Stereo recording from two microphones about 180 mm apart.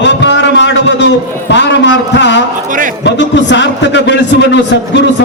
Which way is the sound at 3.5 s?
80° left.